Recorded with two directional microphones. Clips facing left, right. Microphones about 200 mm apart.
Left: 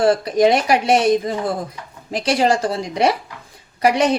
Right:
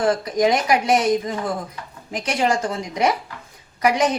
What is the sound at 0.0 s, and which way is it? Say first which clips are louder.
Speech: left 4 dB; 30° left (ahead or behind).